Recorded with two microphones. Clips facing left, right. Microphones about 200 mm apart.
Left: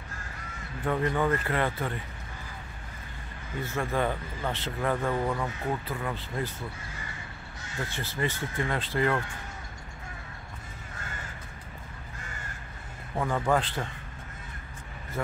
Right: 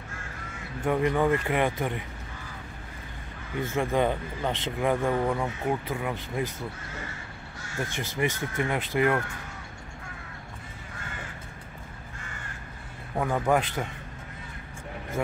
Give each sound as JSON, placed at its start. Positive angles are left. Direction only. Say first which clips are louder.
{"t": 0.8, "sound": "speech", "louder": "right 3 dB", "side_deg": -15}
{"t": 3.7, "sound": "speech", "louder": "right 4 dB", "side_deg": -15}
{"t": 7.8, "sound": "speech", "louder": "right 3 dB", "side_deg": -15}
{"t": 13.1, "sound": "speech", "louder": "right 2 dB", "side_deg": -15}